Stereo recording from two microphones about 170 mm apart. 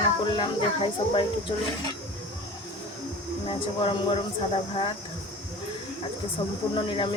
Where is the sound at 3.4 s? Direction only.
30° left (ahead or behind).